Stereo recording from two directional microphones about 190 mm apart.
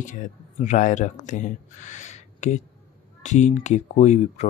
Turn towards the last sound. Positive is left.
turn(degrees=35)  # may be behind; listen again after turning